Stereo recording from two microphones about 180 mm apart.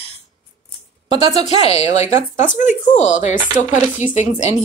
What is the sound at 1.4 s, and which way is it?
Speech, 35° left (ahead or behind).